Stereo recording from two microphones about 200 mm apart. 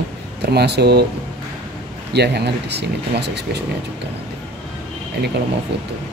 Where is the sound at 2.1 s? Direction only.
55° right (ahead or behind).